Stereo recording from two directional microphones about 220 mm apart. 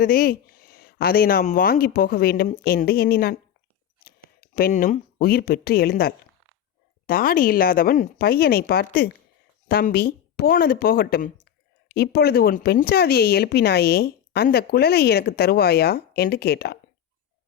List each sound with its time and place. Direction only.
0.0 s speech: 40° left (ahead or behind)